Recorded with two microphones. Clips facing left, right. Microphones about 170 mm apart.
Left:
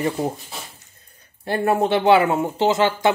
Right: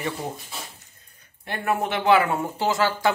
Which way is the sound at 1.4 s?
30° left (ahead or behind).